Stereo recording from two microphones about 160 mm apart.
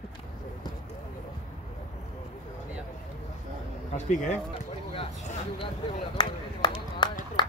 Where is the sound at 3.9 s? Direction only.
50° left (ahead or behind).